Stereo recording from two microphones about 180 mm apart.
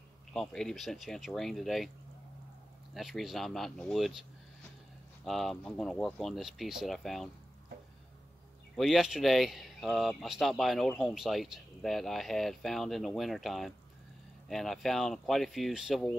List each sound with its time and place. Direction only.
0.3 s speech: 5° left (ahead or behind)
2.9 s speech: centre (ahead or behind)
8.7 s speech: centre (ahead or behind)